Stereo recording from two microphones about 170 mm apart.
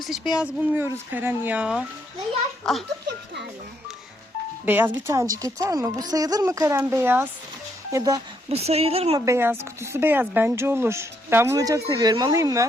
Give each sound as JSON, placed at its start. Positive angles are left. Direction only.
{"t": 0.0, "sound": "speech", "side_deg": 0}
{"t": 2.6, "sound": "baby laughter", "side_deg": 0}
{"t": 4.6, "sound": "a woman's voice", "side_deg": -10}
{"t": 8.4, "sound": "speech", "side_deg": -35}
{"t": 9.1, "sound": "speech", "side_deg": -15}